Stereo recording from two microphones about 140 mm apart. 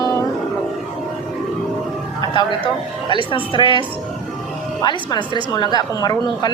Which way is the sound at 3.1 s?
35° left (ahead or behind).